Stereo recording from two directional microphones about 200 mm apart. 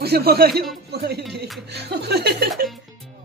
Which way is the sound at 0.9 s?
50° right (ahead or behind).